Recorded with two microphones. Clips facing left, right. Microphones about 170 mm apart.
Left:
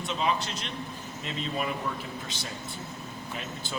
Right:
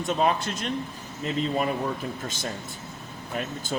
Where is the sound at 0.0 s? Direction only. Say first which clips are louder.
Right 5 dB; 50° right (ahead or behind).